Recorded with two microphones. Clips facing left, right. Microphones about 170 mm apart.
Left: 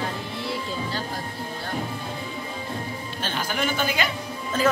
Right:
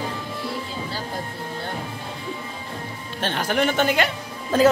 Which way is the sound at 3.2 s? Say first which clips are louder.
Right 6 dB; 65° right (ahead or behind).